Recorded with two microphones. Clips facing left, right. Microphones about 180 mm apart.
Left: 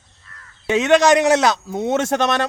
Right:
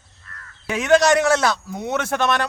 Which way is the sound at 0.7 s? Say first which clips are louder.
Left 2 dB; 25° left (ahead or behind).